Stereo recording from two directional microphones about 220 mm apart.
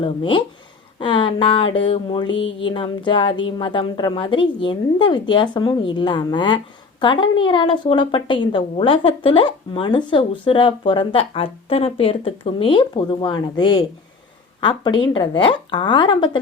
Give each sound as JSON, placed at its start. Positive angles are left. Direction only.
{"t": 0.0, "sound": "a woman's voice", "side_deg": 25}